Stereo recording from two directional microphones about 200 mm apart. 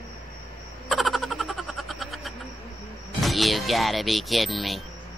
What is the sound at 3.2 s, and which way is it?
Music, centre (ahead or behind).